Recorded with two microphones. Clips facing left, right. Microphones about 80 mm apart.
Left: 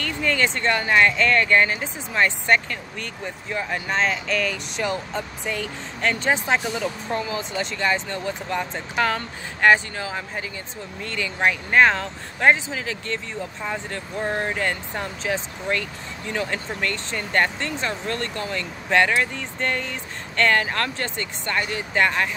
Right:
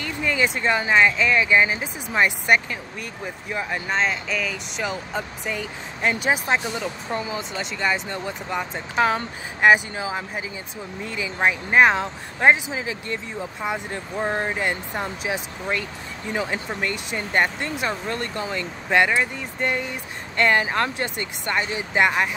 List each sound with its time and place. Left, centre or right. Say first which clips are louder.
0.0 s speech: even; centre